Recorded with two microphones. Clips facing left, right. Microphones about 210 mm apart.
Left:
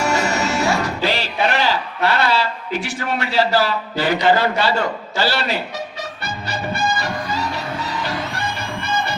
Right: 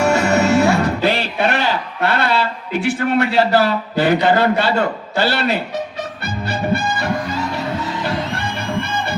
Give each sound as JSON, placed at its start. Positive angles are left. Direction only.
{"t": 0.0, "sound": "music", "side_deg": -60}
{"t": 5.1, "sound": "speech", "side_deg": -55}